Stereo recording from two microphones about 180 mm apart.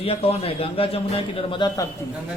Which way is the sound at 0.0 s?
35° left (ahead or behind).